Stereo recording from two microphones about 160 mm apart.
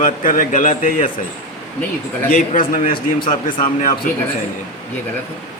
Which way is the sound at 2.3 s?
55° left (ahead or behind).